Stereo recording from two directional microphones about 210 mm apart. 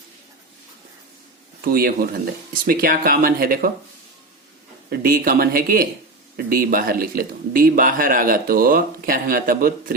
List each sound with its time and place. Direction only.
1.6 s a man's voice: 45° right (ahead or behind)
4.9 s a man's voice: 45° right (ahead or behind)